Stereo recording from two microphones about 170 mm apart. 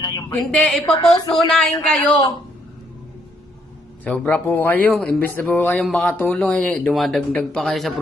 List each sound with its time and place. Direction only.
0.0 s a sound: 20° left (ahead or behind)
0.5 s speech: 5° left (ahead or behind)
4.0 s speech: 10° left (ahead or behind)